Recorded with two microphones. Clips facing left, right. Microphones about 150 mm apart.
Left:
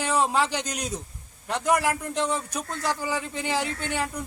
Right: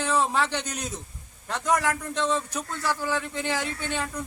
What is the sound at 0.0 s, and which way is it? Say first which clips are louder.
A man's voice: left 1 dB; 15° left (ahead or behind).